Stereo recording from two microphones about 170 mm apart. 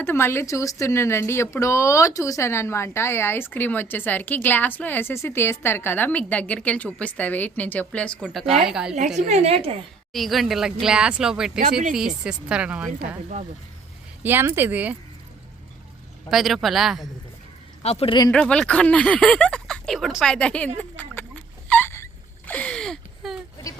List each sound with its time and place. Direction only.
0.0 s speech: 15° left (ahead or behind); by 9.0 s 5° right (ahead or behind)
9.1 s a woman's voice: 40° right (ahead or behind)
10.1 s speech: centre (ahead or behind)
14.3 s speech: 15° right (ahead or behind)
16.3 s speech: centre (ahead or behind)
17.8 s speech: 35° left (ahead or behind)
18.3 s speech: 5° left (ahead or behind)
20.7 s a sound: 10° left (ahead or behind)